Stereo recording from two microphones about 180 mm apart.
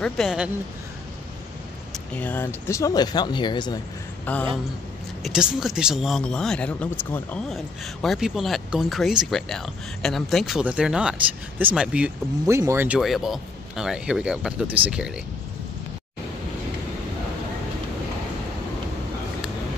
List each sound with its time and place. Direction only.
0.0 s speech: centre (ahead or behind)
1.9 s speech: 10° left (ahead or behind); by 3.8 s 25° left (ahead or behind)
4.3 s speech: 10° left (ahead or behind)
5.2 s speech: 5° right (ahead or behind)